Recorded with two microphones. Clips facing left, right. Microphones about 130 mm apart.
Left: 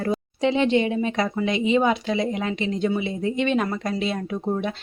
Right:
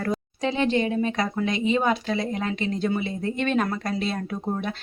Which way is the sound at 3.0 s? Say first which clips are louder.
Left 3 dB; 50° right (ahead or behind).